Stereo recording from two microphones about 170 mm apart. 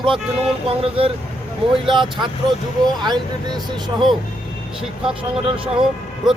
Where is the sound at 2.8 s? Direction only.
25° right (ahead or behind).